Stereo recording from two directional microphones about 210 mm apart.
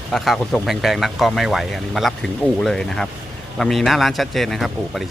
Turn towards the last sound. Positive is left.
turn(degrees=0)  # may be behind; listen again after turning